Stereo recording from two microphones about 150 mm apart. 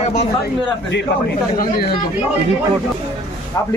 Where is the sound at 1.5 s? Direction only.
90° left.